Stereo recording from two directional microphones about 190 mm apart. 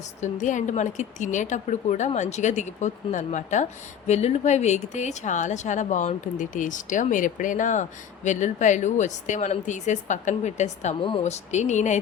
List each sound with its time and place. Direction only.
0.2 s speech: 40° left (ahead or behind)